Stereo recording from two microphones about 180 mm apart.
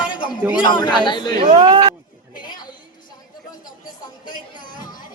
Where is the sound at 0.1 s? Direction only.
25° left (ahead or behind).